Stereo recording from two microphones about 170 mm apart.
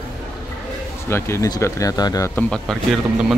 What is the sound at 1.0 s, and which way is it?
Speech, 15° left (ahead or behind).